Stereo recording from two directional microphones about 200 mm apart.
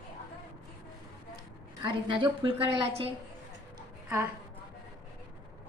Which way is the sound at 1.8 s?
25° right (ahead or behind).